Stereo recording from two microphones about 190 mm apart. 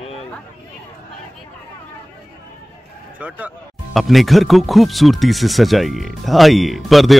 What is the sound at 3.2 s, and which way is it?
Speech, 10° right (ahead or behind).